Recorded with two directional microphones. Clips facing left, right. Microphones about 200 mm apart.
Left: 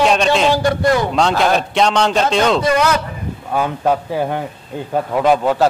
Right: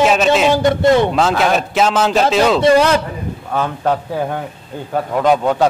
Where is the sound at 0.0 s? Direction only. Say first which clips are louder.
Right 1 dB; 5° right (ahead or behind).